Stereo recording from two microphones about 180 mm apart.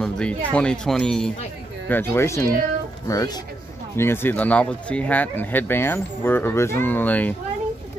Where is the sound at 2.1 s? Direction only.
15° left (ahead or behind).